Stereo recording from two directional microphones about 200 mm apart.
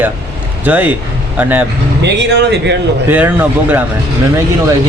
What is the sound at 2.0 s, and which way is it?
Speech, 60° right (ahead or behind).